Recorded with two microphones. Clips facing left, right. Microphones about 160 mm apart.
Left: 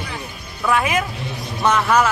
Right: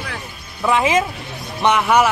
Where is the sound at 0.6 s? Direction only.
20° right (ahead or behind).